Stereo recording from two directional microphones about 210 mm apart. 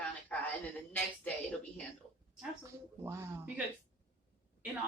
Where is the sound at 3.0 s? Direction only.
10° right (ahead or behind).